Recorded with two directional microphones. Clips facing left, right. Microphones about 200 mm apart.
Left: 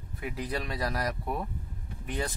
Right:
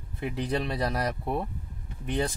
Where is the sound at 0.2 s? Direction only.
30° right (ahead or behind).